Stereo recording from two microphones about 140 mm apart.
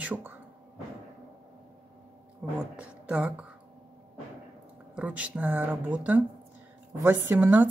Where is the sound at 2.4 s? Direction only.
10° right (ahead or behind).